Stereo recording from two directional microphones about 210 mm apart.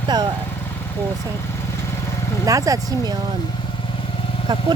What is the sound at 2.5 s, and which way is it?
Speech, 15° right (ahead or behind).